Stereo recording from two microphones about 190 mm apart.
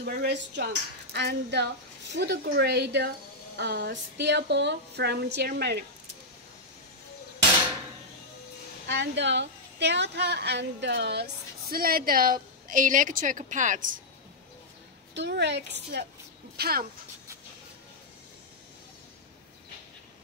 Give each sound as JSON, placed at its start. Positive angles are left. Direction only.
{"t": 0.0, "sound": "speech", "side_deg": -60}
{"t": 8.8, "sound": "a woman's voice", "side_deg": -70}
{"t": 11.7, "sound": "a woman's voice", "side_deg": -50}
{"t": 15.1, "sound": "speech", "side_deg": -65}